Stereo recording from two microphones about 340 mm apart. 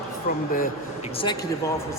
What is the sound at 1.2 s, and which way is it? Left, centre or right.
Speech, centre.